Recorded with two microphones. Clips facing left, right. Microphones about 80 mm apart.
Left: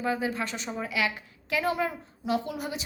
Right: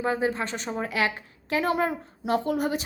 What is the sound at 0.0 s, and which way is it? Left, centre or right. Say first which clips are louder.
A woman's voice: right 3 dB; right.